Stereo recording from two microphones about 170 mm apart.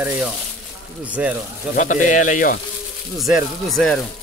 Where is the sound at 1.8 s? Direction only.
45° left (ahead or behind).